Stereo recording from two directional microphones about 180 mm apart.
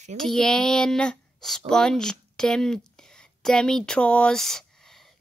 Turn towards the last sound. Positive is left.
turn(degrees=0)  # may be behind; listen again after turning